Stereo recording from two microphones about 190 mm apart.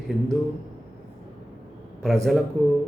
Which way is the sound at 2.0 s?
Centre (ahead or behind).